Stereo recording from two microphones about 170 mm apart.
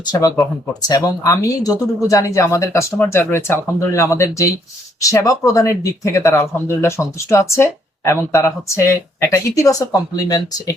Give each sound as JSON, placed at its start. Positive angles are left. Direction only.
{"t": 0.1, "sound": "speech", "side_deg": 25}